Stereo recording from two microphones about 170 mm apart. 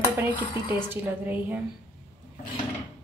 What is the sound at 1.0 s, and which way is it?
Speech, 10° right (ahead or behind).